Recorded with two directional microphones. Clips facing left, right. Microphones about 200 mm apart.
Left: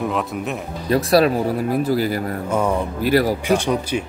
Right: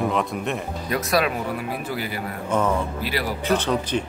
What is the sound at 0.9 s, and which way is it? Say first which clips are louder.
Speech: left 7 dB; 35° left (ahead or behind).